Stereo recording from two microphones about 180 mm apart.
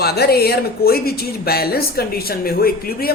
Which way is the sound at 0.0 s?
60° left (ahead or behind).